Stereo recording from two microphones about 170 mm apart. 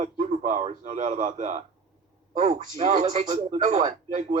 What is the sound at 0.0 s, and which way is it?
A man's voice, 40° right (ahead or behind).